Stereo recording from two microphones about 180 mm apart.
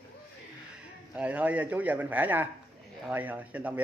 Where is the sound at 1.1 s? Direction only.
10° right (ahead or behind).